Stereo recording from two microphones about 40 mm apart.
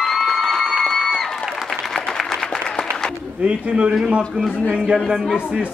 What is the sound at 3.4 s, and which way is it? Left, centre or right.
Speech, right.